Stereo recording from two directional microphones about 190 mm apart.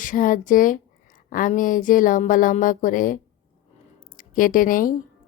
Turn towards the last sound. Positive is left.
turn(degrees=45)  # may be behind; listen again after turning